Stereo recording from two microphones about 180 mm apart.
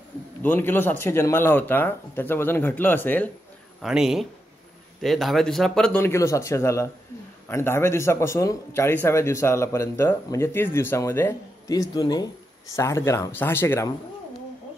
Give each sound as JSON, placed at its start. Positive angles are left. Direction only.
{"t": 0.4, "sound": "a man's voice", "side_deg": 10}
{"t": 3.8, "sound": "a man's voice", "side_deg": -5}